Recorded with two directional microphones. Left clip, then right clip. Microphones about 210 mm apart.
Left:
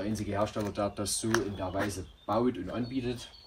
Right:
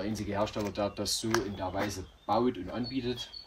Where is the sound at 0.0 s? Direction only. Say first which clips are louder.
Left 1 dB; 25° right (ahead or behind).